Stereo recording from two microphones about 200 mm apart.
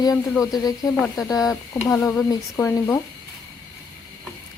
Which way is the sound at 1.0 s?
5° left (ahead or behind).